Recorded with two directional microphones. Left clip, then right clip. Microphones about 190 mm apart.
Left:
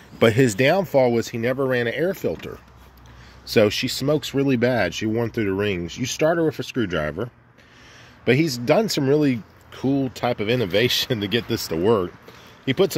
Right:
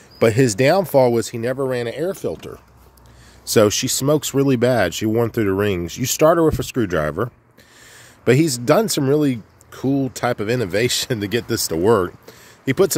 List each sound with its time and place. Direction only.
0.2 s speech: 10° right (ahead or behind)
1.4 s speech: centre (ahead or behind)
3.4 s speech: 25° right (ahead or behind)